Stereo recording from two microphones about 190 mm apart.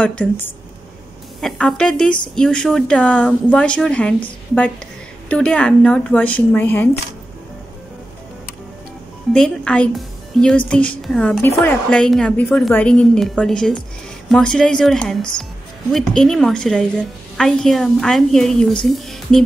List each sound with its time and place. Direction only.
0.0 s a woman's voice: 5° left (ahead or behind)
9.3 s a woman's voice: 5° left (ahead or behind)